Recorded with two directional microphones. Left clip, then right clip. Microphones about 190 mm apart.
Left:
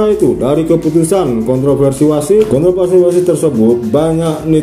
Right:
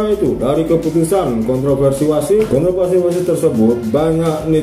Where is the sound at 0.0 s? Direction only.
35° left (ahead or behind).